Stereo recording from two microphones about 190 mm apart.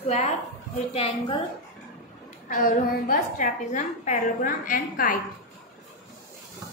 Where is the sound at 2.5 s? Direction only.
45° left (ahead or behind).